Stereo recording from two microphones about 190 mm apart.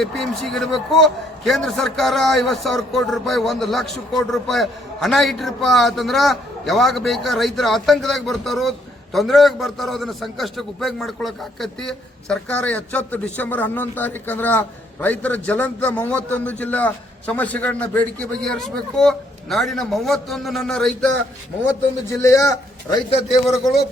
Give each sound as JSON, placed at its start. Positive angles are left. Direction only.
{"t": 0.0, "sound": "a man's voice", "side_deg": 0}
{"t": 21.7, "sound": "a man's voice", "side_deg": 15}